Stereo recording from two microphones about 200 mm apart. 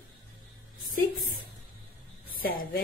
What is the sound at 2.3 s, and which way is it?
Speech, 45° left (ahead or behind).